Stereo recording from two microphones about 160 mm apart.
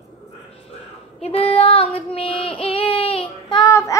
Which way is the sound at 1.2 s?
40° left (ahead or behind).